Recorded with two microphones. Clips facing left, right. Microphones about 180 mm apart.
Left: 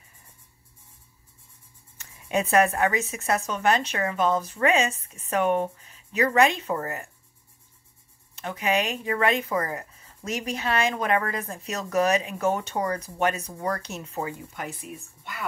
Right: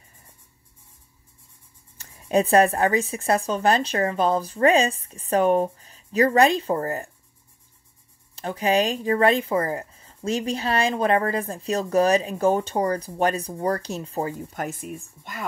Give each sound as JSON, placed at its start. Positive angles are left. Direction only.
{"t": 2.0, "sound": "speech", "side_deg": -35}
{"t": 8.4, "sound": "speech", "side_deg": -35}